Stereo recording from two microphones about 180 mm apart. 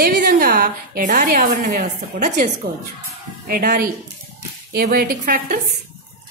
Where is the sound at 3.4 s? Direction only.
55° right (ahead or behind).